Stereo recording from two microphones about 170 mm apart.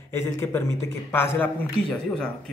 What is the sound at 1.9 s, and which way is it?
Speech, centre (ahead or behind).